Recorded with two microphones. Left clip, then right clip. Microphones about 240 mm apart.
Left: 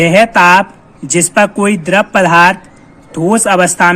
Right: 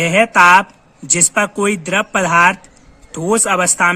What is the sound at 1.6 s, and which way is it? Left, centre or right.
A man's voice, right.